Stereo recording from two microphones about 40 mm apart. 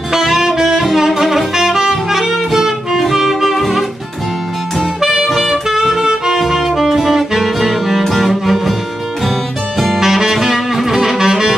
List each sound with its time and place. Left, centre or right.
0.1 s saxophone: centre
9.9 s saxophone: centre